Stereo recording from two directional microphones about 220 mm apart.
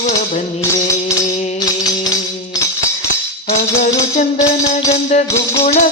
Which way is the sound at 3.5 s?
35° left (ahead or behind).